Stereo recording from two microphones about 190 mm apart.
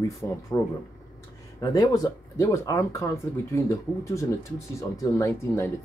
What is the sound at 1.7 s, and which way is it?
Speech, 20° left (ahead or behind).